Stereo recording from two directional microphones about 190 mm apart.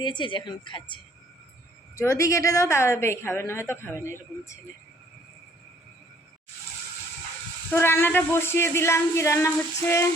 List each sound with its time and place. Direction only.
0.0 s a woman's voice: 25° left (ahead or behind)
2.0 s a woman's voice: 15° left (ahead or behind)
7.7 s a woman's voice: 10° left (ahead or behind)